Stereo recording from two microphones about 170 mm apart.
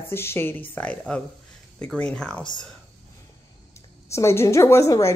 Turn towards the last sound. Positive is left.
turn(degrees=15)  # may be behind; listen again after turning